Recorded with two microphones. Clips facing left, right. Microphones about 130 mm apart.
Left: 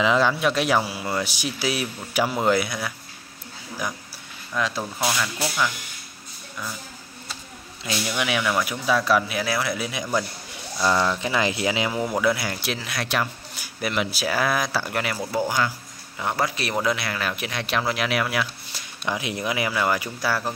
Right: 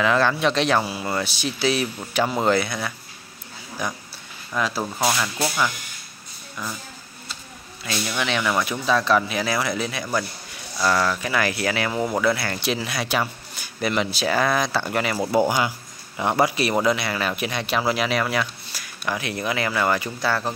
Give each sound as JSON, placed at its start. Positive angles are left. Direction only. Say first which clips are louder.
{"t": 0.0, "sound": "speech", "louder": "even", "side_deg": 15}
{"t": 4.6, "sound": "speech", "louder": "right 2 dB", "side_deg": -5}
{"t": 7.8, "sound": "speech", "louder": "even", "side_deg": 10}
{"t": 12.7, "sound": "speech", "louder": "right 1 dB", "side_deg": 0}
{"t": 15.3, "sound": "speech", "louder": "right 4 dB", "side_deg": -15}
{"t": 18.7, "sound": "speech", "louder": "even", "side_deg": 20}